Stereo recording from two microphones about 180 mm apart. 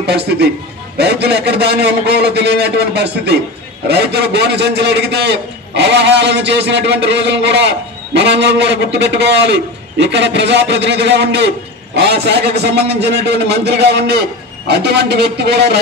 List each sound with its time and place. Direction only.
0.0 s a man's voice: 65° right (ahead or behind)